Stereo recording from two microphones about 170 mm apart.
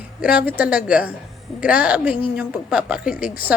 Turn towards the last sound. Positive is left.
turn(degrees=-5)  # may be behind; listen again after turning